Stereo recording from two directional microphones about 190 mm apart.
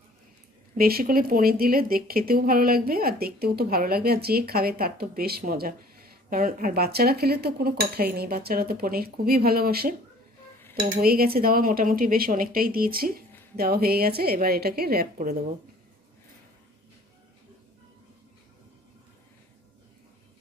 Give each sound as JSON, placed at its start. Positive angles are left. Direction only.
{"t": 0.7, "sound": "speech", "side_deg": -50}